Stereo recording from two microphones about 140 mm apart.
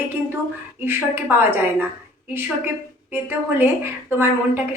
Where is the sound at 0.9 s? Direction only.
15° right (ahead or behind).